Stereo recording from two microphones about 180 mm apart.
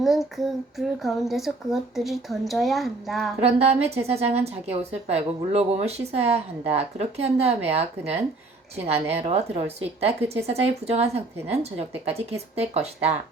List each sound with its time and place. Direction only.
0.0 s a child's voice: centre (ahead or behind)
3.4 s a woman's voice: 35° right (ahead or behind)